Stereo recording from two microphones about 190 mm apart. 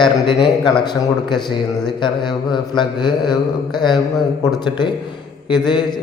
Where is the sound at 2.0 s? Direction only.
25° left (ahead or behind).